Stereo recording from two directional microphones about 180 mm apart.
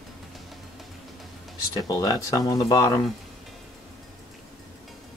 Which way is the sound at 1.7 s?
20° left (ahead or behind).